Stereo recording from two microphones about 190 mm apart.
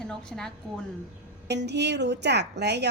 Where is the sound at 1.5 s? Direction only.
65° right (ahead or behind).